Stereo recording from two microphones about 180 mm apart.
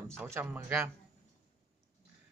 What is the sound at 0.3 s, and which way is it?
Speech, 10° right (ahead or behind).